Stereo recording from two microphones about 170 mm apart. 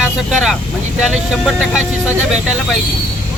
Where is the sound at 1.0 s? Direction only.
5° right (ahead or behind).